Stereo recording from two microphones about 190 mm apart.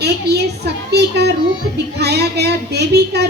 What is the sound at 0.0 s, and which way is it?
A child's voice, 60° right (ahead or behind).